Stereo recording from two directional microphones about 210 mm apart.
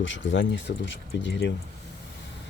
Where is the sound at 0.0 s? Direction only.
65° left (ahead or behind).